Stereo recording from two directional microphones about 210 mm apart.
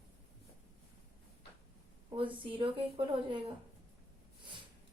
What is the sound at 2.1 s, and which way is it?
Speech, 25° right (ahead or behind).